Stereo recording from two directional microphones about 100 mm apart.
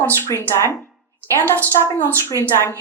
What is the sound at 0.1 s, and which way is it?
A woman's voice, 25° left (ahead or behind).